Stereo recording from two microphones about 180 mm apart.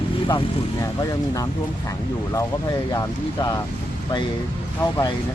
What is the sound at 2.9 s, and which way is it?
Speech, 20° left (ahead or behind).